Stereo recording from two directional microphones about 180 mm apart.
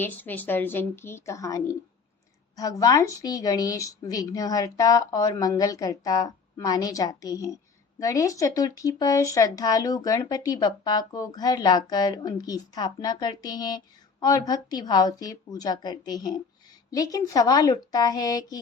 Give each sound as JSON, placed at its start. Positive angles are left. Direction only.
{"t": 0.0, "sound": "a woman's voice", "side_deg": 10}